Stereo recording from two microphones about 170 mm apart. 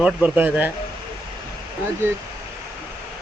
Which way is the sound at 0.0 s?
10° right (ahead or behind).